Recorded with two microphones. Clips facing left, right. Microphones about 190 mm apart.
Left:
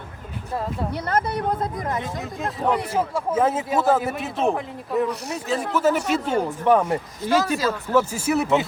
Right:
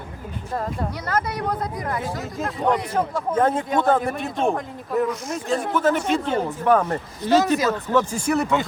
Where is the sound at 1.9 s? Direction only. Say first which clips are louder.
Right 1 dB; centre (ahead or behind).